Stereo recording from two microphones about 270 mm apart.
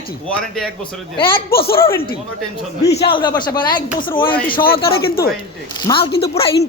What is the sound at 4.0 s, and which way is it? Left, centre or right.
Speech, left.